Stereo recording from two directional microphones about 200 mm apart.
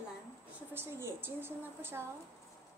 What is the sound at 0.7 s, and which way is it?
A woman's voice, 10° right (ahead or behind).